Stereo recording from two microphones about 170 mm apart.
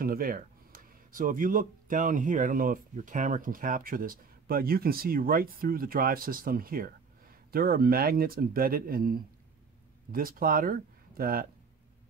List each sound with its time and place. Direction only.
0.0 s speech: 60° right (ahead or behind)